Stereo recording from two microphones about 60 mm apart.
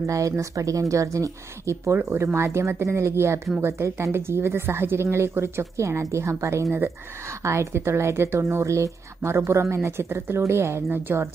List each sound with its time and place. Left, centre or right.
0.0 s speech: right
2.0 s speech: right
10.9 s a woman's voice: right